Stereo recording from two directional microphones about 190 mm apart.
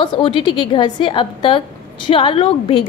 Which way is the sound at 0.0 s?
25° left (ahead or behind).